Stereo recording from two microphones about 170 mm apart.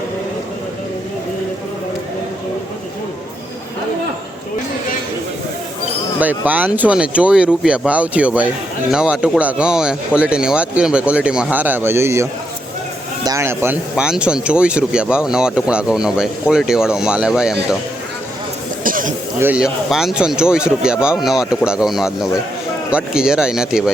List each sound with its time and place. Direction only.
6.1 s speech: 10° right (ahead or behind)
18.8 s cough: 55° right (ahead or behind)
19.4 s speech: 10° right (ahead or behind)